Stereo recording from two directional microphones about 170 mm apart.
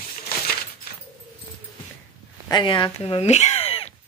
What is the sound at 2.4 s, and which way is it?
Speech, 25° left (ahead or behind).